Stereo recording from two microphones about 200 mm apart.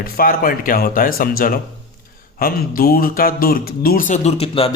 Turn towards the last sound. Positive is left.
turn(degrees=30)  # may be behind; listen again after turning